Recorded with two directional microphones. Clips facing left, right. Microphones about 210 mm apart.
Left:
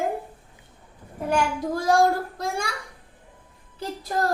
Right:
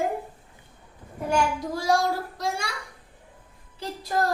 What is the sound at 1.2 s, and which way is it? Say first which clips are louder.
A child's voice: left 1 dB; 55° left (ahead or behind).